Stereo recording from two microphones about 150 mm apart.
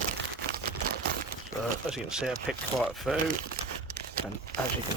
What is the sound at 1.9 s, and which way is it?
Speech, 5° right (ahead or behind).